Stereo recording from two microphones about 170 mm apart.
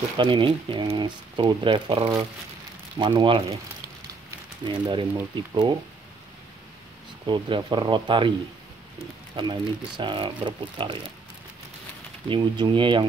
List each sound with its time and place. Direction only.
0.2 s speech: 30° right (ahead or behind)
4.6 s speech: 25° right (ahead or behind)
7.2 s speech: 30° right (ahead or behind)
9.3 s speech: 25° right (ahead or behind)
12.3 s speech: 25° right (ahead or behind)